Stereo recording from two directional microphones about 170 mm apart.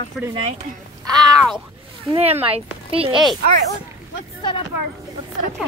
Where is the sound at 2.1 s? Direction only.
35° right (ahead or behind).